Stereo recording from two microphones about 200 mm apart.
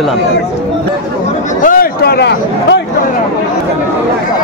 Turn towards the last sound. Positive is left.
turn(degrees=55)  # may be behind; listen again after turning